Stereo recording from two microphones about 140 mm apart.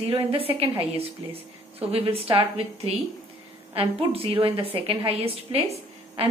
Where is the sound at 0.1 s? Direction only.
40° right (ahead or behind).